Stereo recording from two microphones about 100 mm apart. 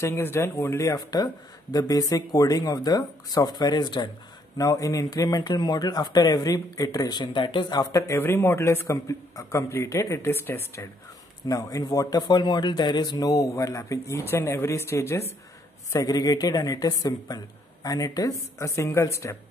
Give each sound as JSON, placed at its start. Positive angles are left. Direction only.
{"t": 0.0, "sound": "speech", "side_deg": 25}
{"t": 4.6, "sound": "speech", "side_deg": 35}
{"t": 7.8, "sound": "speech", "side_deg": 30}
{"t": 8.2, "sound": "a man's voice", "side_deg": 20}
{"t": 11.4, "sound": "speech", "side_deg": 40}